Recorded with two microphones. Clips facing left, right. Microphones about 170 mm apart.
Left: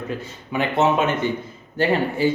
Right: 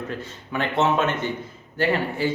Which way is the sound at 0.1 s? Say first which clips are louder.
Left 3 dB; 10° left (ahead or behind).